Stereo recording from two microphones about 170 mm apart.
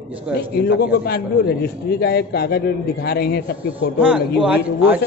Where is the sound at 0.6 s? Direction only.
65° left (ahead or behind).